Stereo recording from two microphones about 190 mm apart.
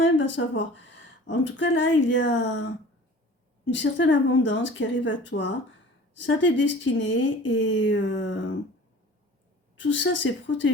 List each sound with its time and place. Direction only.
0.0 s speech: 80° left
3.7 s speech: 75° left (ahead or behind)
9.7 s speech: 75° left (ahead or behind)